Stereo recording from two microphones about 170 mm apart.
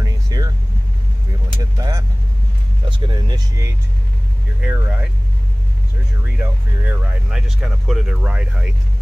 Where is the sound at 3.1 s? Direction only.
25° right (ahead or behind).